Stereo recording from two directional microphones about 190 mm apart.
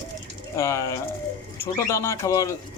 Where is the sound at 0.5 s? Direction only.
15° left (ahead or behind).